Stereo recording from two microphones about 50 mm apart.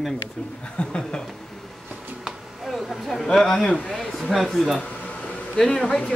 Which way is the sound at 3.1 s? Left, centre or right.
Centre.